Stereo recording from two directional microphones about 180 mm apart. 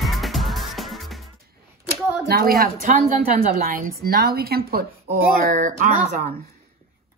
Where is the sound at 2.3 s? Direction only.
55° right (ahead or behind).